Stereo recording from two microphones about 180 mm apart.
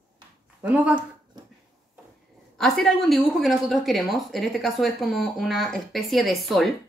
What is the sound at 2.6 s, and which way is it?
A woman's voice, centre (ahead or behind).